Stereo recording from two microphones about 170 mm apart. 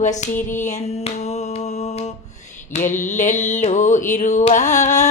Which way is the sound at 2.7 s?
50° left (ahead or behind).